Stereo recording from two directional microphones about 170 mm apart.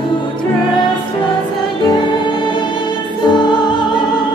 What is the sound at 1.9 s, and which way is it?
Music, 30° left (ahead or behind).